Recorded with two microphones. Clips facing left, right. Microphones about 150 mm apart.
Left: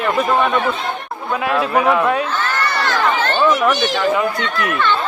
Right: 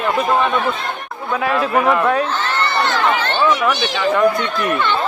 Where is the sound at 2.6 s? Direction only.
20° right (ahead or behind).